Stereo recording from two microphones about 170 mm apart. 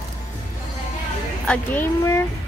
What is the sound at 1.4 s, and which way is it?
Speech, 10° left (ahead or behind).